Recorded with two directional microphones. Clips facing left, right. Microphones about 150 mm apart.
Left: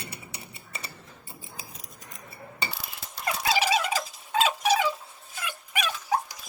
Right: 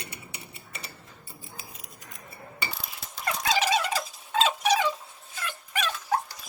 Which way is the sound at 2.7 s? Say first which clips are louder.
Even; 10° left (ahead or behind).